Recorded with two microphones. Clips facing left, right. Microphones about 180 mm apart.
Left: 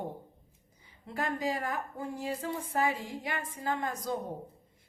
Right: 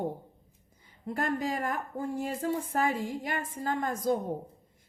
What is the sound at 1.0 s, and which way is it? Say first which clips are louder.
Speech: right 2 dB; 50° right (ahead or behind).